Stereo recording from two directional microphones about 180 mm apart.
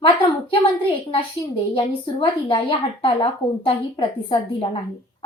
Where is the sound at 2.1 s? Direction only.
30° left (ahead or behind).